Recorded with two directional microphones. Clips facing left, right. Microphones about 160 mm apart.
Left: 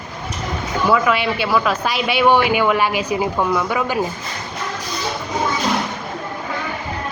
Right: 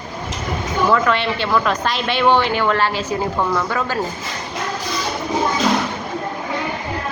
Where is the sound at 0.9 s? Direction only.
10° left (ahead or behind).